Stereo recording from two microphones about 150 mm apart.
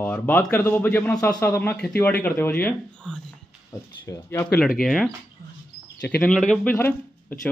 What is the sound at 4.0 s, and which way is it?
Speech, 15° left (ahead or behind).